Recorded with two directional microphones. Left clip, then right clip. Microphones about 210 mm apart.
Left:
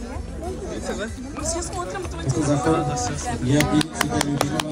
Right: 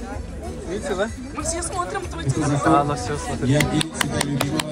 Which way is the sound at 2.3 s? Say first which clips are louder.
Left 1 dB; 55° left (ahead or behind).